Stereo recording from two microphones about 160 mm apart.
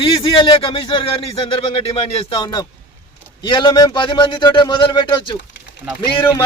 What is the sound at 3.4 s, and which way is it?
A man's voice, 30° left (ahead or behind).